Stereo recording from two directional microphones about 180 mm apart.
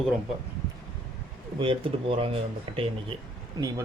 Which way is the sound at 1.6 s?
30° right (ahead or behind).